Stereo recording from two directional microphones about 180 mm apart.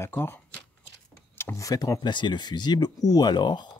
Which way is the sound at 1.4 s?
15° left (ahead or behind).